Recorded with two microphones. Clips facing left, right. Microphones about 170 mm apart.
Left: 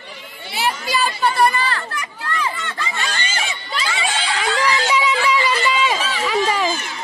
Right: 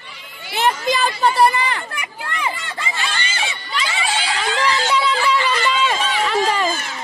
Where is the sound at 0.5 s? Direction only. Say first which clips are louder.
Right 3 dB; 50° right (ahead or behind).